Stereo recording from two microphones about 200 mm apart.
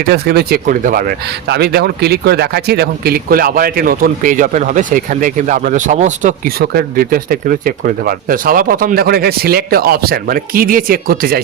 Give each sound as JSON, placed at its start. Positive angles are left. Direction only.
{"t": 0.0, "sound": "speech", "side_deg": -50}
{"t": 1.5, "sound": "speech", "side_deg": -55}